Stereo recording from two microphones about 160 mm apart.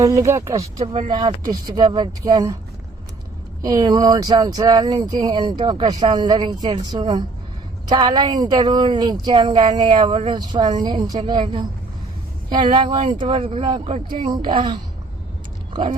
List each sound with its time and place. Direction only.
0.0 s a woman's voice: 20° right (ahead or behind)
0.9 s a woman's voice: 30° right (ahead or behind)
3.6 s a woman's voice: 25° right (ahead or behind)